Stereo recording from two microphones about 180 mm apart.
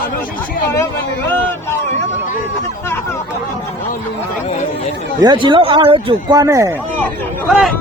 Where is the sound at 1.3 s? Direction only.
10° left (ahead or behind).